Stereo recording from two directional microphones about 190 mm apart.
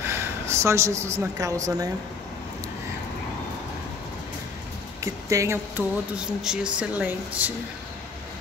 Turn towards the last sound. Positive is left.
turn(degrees=-10)  # may be behind; listen again after turning